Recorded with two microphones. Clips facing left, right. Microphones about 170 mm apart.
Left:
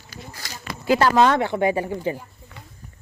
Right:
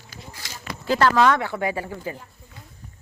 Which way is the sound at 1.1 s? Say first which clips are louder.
Left 2 dB; 25° left (ahead or behind).